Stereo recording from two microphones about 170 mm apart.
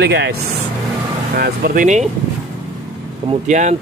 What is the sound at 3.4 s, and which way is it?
Speech, 45° right (ahead or behind).